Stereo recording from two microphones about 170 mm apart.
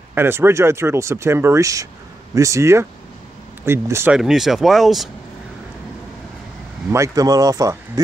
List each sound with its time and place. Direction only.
0.1 s speech: 15° right (ahead or behind)
4.2 s speech: centre (ahead or behind)
6.9 s speech: 20° right (ahead or behind)